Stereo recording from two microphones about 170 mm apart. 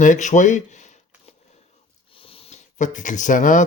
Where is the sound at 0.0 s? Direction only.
45° left (ahead or behind).